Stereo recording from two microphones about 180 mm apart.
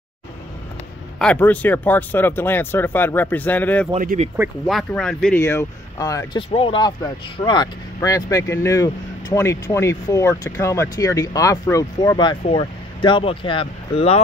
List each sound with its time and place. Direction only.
1.2 s speech: 10° left (ahead or behind)
4.0 s speech: 50° right (ahead or behind)
4.6 s speech: centre (ahead or behind)
5.4 s speech: 15° left (ahead or behind)
6.5 s speech: 30° left (ahead or behind)